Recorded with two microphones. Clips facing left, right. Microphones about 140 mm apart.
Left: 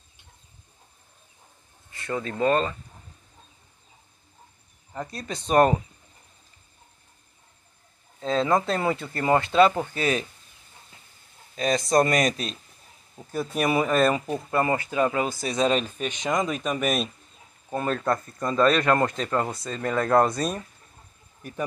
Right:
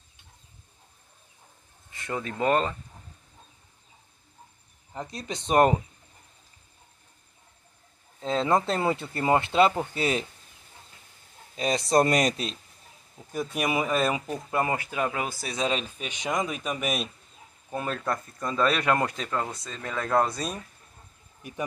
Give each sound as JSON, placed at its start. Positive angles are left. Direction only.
{"t": 1.9, "sound": "speech", "side_deg": -15}
{"t": 4.9, "sound": "speech", "side_deg": -20}
{"t": 8.2, "sound": "speech", "side_deg": -20}
{"t": 11.5, "sound": "speech", "side_deg": -30}
{"t": 13.6, "sound": "speech", "side_deg": -10}
{"t": 21.4, "sound": "speech", "side_deg": -15}